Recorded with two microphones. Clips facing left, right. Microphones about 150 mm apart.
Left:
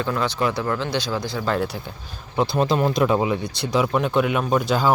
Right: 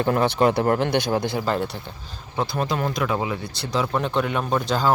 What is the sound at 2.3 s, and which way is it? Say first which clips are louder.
Speech: left 4 dB; 20° left (ahead or behind).